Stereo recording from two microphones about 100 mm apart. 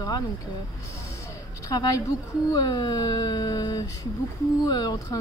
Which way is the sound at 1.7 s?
40° left (ahead or behind).